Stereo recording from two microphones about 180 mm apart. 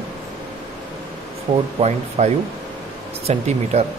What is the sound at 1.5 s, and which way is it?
Speech, 25° right (ahead or behind).